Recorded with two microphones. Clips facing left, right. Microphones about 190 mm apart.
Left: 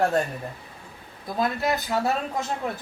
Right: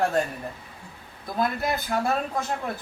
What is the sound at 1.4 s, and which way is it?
Speech, 20° left (ahead or behind).